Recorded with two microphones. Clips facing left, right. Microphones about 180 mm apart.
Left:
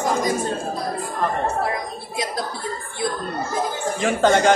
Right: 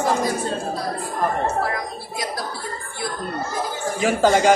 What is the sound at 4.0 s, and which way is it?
Speech, 5° right (ahead or behind).